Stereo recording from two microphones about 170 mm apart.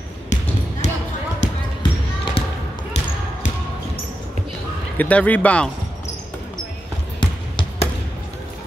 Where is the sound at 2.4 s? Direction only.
35° left (ahead or behind).